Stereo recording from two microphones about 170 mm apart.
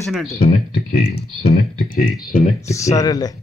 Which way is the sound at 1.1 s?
70° left (ahead or behind).